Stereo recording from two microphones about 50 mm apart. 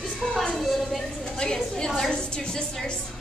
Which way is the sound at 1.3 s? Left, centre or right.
Centre.